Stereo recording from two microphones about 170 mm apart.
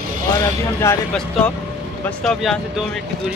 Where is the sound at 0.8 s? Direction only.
15° left (ahead or behind).